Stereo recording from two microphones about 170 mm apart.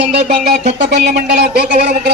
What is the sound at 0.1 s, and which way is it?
Speech, 75° right (ahead or behind).